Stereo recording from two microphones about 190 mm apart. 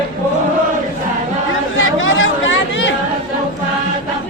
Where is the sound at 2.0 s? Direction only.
85° left.